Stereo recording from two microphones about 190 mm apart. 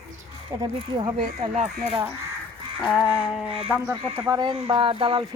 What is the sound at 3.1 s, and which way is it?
Speech, 5° right (ahead or behind).